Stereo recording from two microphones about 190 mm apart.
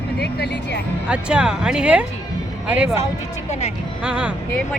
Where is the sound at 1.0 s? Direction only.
5° right (ahead or behind).